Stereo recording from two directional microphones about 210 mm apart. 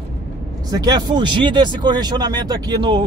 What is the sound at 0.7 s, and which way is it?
Speech, 20° right (ahead or behind).